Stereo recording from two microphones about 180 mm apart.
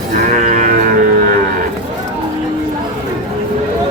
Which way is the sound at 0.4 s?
45° right (ahead or behind).